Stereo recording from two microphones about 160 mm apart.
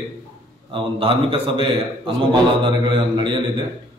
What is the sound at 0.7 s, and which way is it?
A man's voice, 35° right (ahead or behind).